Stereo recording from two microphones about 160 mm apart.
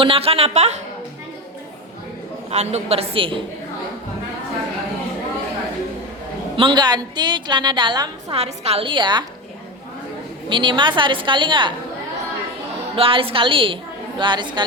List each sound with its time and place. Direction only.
0.0 s a woman's voice: 35° right (ahead or behind)
2.5 s a woman's voice: 40° right (ahead or behind)
6.6 s a woman's voice: 30° right (ahead or behind)
8.4 s a woman's voice: 40° right (ahead or behind)
10.5 s a woman's voice: 30° right (ahead or behind)
13.0 s a woman's voice: 35° right (ahead or behind)